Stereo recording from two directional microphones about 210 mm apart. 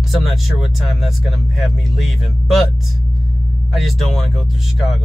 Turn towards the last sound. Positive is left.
turn(degrees=0)  # may be behind; listen again after turning